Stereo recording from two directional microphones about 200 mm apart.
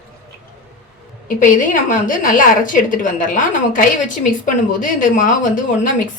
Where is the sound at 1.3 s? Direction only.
40° left (ahead or behind).